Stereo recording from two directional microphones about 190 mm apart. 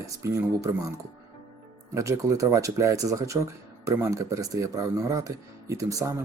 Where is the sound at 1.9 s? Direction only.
15° right (ahead or behind).